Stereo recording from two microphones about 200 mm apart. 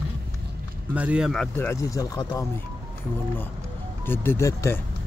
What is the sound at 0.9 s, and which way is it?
Speech, 5° right (ahead or behind).